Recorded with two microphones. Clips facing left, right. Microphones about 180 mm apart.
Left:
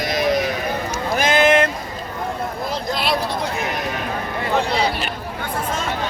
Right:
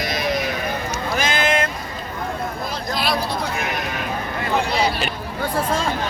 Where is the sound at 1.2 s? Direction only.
60° left (ahead or behind).